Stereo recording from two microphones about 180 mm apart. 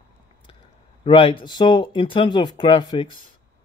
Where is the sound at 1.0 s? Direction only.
30° left (ahead or behind).